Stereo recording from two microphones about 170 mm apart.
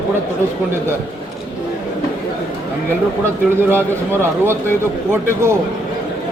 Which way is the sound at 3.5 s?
15° right (ahead or behind).